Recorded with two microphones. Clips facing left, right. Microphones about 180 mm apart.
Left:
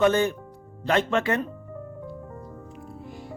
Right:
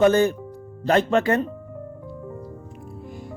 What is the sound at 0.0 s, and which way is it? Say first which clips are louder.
A woman's voice: right 4 dB; 40° right (ahead or behind).